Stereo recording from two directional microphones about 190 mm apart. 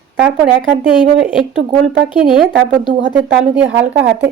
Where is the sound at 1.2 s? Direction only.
5° right (ahead or behind).